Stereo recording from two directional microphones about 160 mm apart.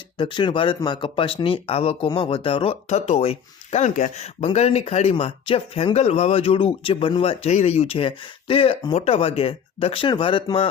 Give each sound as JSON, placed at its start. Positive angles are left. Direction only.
{"t": 0.2, "sound": "speech", "side_deg": 30}